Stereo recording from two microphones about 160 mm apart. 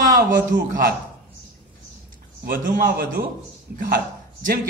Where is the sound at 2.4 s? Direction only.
60° right (ahead or behind).